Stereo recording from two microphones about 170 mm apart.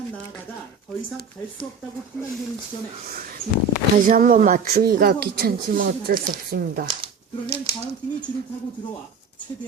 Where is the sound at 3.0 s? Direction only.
55° right (ahead or behind).